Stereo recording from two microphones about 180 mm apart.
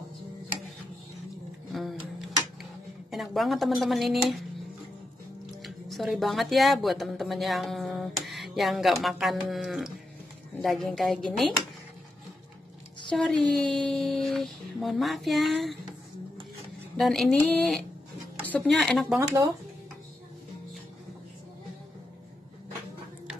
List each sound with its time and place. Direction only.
1.7 s music: centre (ahead or behind)
3.1 s speech: centre (ahead or behind)
5.6 s speech: centre (ahead or behind)
13.1 s speech: 5° left (ahead or behind)
16.9 s speech: 5° left (ahead or behind)
19.1 s speech: 15° right (ahead or behind)